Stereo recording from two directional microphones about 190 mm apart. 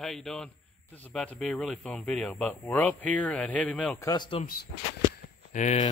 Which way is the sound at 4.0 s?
20° left (ahead or behind).